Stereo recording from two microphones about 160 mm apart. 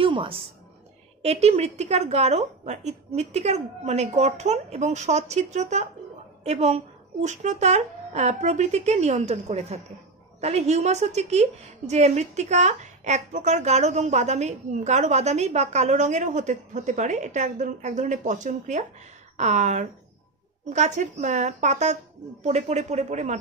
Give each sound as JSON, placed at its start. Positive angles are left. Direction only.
{"t": 0.0, "sound": "music", "side_deg": -30}
{"t": 1.2, "sound": "a woman's voice", "side_deg": -40}